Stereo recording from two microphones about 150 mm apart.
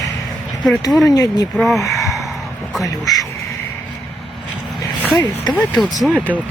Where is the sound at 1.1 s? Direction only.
25° left (ahead or behind).